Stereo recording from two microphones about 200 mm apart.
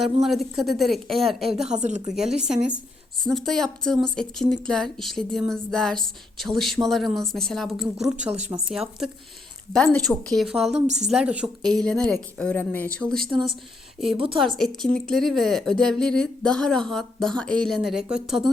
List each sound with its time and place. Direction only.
0.0 s a woman's voice: centre (ahead or behind)
1.5 s a woman's voice: 35° right (ahead or behind)
2.4 s a woman's voice: 5° right (ahead or behind)
13.3 s speech: 25° right (ahead or behind)
14.3 s a woman's voice: centre (ahead or behind)